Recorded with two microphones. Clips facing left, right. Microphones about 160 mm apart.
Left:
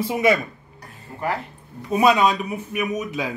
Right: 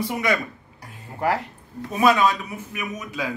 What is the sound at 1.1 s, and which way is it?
Speech, 90° right.